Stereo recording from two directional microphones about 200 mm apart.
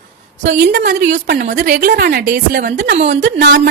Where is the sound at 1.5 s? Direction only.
40° right (ahead or behind).